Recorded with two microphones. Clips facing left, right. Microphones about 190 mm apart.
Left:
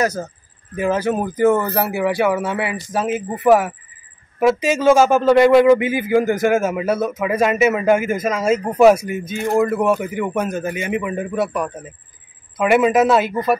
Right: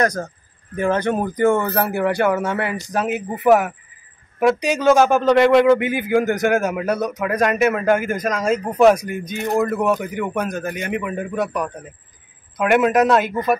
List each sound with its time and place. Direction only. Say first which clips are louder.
0.0 s a man's voice: even; 5° left (ahead or behind)